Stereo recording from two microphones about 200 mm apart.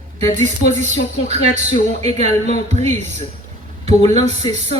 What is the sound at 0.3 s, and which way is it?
Speech, 35° right (ahead or behind).